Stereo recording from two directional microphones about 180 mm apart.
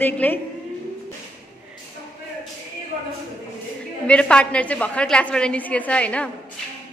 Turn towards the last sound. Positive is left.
turn(degrees=5)  # may be behind; listen again after turning